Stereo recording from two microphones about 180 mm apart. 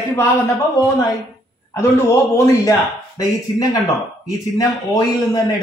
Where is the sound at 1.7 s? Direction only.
15° left (ahead or behind).